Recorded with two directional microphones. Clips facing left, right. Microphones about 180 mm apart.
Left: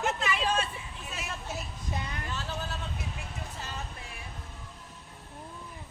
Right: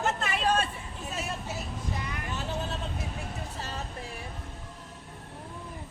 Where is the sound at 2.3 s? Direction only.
25° right (ahead or behind).